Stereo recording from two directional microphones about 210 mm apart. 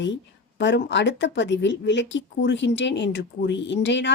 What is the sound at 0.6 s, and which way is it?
Speech, 55° left (ahead or behind).